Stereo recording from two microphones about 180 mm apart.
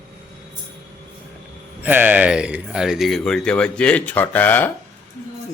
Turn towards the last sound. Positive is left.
turn(degrees=10)  # may be behind; listen again after turning